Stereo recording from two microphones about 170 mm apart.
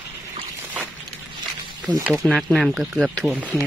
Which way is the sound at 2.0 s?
5° right (ahead or behind).